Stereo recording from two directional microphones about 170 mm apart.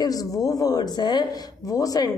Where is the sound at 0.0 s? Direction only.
20° left (ahead or behind).